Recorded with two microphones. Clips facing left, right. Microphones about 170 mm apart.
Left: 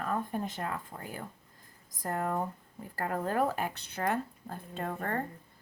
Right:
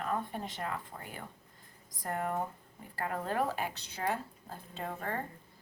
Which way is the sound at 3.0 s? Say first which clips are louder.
Left 3 dB; 45° left (ahead or behind).